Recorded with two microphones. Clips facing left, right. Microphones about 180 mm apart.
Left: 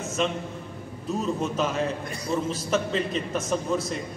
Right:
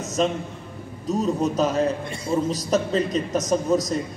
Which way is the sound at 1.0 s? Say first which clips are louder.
Right 5 dB; 40° right (ahead or behind).